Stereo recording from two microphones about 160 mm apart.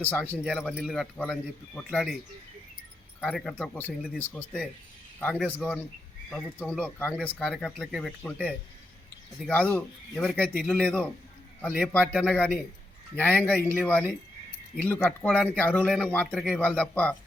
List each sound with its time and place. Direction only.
0.0 s a man's voice: 10° left (ahead or behind)
0.4 s speech: centre (ahead or behind)
1.1 s speech: 10° left (ahead or behind)
3.2 s a man's voice: 5° left (ahead or behind)
9.5 s a man's voice: 10° left (ahead or behind)
14.8 s a man's voice: 10° left (ahead or behind)